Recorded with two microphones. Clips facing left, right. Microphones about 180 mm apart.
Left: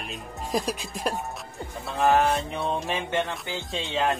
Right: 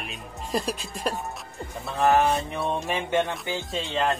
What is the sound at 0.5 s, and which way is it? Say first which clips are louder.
Speech: even; 15° left (ahead or behind).